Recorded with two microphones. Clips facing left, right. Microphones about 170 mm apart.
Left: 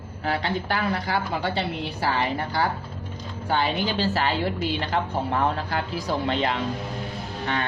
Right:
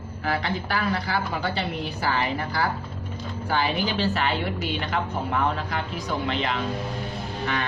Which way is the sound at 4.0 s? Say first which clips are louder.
Left 1 dB; 30° left (ahead or behind).